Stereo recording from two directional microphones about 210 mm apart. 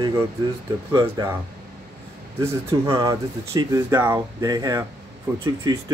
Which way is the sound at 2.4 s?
15° right (ahead or behind).